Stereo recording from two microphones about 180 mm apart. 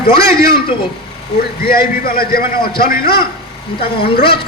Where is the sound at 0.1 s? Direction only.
60° left (ahead or behind).